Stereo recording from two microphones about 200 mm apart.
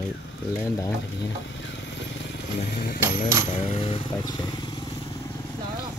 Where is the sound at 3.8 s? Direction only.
25° left (ahead or behind).